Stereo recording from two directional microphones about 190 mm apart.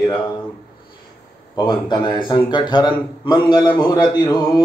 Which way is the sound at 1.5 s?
20° left (ahead or behind).